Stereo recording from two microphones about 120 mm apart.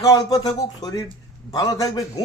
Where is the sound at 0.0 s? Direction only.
30° left (ahead or behind).